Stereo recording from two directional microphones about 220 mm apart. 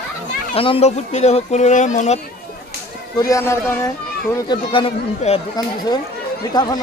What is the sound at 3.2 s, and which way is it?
Speech, 15° left (ahead or behind).